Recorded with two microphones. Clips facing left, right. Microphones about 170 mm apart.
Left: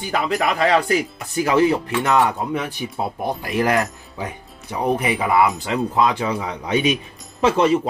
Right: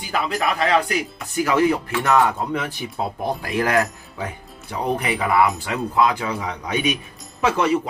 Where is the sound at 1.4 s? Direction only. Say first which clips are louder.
Left 2 dB; 25° left (ahead or behind).